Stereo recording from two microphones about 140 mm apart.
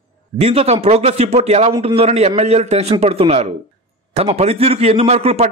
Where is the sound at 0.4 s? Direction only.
45° right (ahead or behind).